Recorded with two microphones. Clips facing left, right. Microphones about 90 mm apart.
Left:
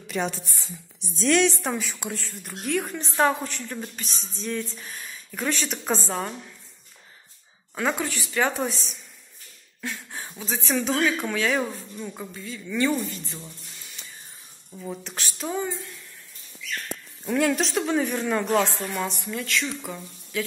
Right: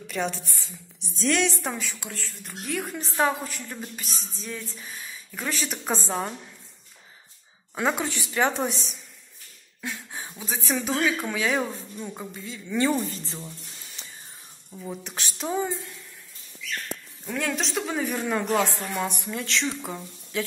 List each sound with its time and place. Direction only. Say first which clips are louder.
0.0 s a sound: left 1 dB; 5° left (ahead or behind)
1.2 s speech: left 3 dB; centre (ahead or behind)
1.8 s a woman's voice: left 3 dB; 20° left (ahead or behind)
2.4 s speech: left 4 dB; centre (ahead or behind)
6.0 s speech: even; 15° right (ahead or behind)
7.7 s a woman's voice: even; 20° right (ahead or behind)
9.8 s a sound: left 1 dB; 10° right (ahead or behind)
10.4 s a woman's voice: left 2 dB; 15° right (ahead or behind); by 13.4 s 35° right (ahead or behind)
14.0 s a sound: even; 25° right (ahead or behind)
14.7 s a woman's voice: left 1 dB; 15° left (ahead or behind)
15.0 s a woman's voice: right 3 dB; 20° right (ahead or behind)
17.3 s speech: left 5 dB; 5° left (ahead or behind)
18.9 s a woman's voice: right 1 dB; 20° right (ahead or behind)